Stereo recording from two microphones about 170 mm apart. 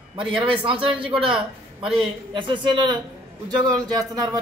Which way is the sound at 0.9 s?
5° right (ahead or behind).